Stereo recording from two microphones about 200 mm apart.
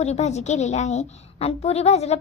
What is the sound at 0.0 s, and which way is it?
A woman's voice, 35° left (ahead or behind).